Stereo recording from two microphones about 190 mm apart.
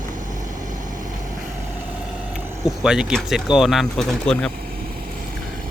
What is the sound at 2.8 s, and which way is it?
Speech, 5° right (ahead or behind).